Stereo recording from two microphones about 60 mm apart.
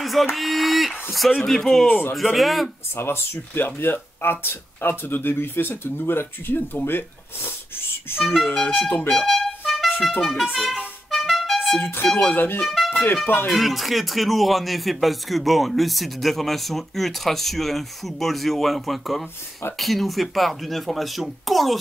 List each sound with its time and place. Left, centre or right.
0.0 s speech: centre
3.0 s speech: left
3.6 s speech: left
8.2 s speech: centre
8.6 s speech: left
9.1 s music: centre
10.5 s speech: centre
11.1 s music: centre
12.2 s speech: left
12.6 s speech: centre